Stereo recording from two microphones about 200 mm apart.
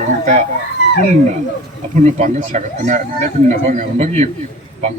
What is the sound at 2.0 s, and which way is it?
A man's voice, 40° right (ahead or behind).